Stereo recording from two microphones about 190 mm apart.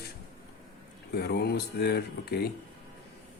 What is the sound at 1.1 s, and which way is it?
Speech, 60° left (ahead or behind).